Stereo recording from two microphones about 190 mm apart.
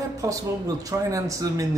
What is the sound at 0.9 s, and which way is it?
Speech, 15° right (ahead or behind).